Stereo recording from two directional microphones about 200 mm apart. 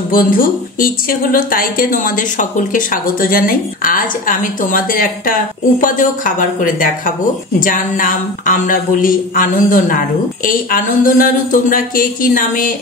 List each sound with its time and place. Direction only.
0.1 s a woman's voice: 45° left (ahead or behind)